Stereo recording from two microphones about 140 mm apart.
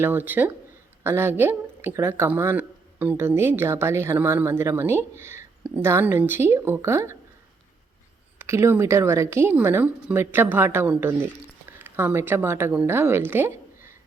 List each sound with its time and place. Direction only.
0.0 s speech: 15° right (ahead or behind)
8.4 s a woman's voice: 20° right (ahead or behind)